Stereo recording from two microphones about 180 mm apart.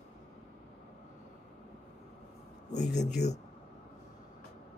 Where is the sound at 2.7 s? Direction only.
40° left (ahead or behind).